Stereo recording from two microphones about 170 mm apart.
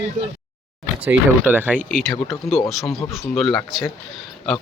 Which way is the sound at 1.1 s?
10° right (ahead or behind).